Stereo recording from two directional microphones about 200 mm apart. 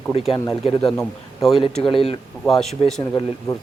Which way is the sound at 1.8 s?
25° left (ahead or behind).